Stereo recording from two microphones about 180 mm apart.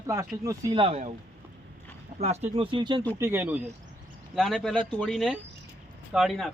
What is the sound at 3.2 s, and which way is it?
Speech, 10° right (ahead or behind).